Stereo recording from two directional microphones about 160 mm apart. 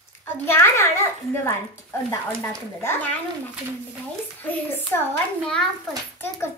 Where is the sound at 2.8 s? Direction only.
15° left (ahead or behind).